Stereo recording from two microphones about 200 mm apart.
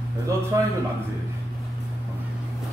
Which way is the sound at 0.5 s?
15° right (ahead or behind).